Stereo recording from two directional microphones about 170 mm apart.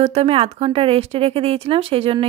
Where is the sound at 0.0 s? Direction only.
35° right (ahead or behind).